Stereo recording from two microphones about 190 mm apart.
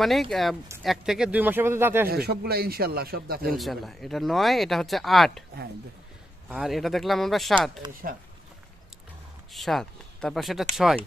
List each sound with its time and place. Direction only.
0.0 s speech: centre (ahead or behind)
2.0 s a man's voice: 55° right (ahead or behind)
3.5 s speech: centre (ahead or behind)
6.5 s speech: centre (ahead or behind)
9.5 s speech: centre (ahead or behind)